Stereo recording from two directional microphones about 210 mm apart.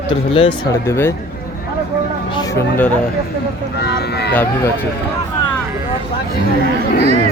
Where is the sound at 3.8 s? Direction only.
50° left (ahead or behind).